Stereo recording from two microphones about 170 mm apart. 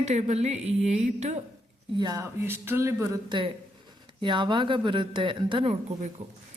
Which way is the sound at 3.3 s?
30° right (ahead or behind).